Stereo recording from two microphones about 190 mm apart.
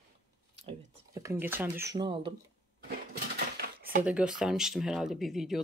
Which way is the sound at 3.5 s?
55° right (ahead or behind).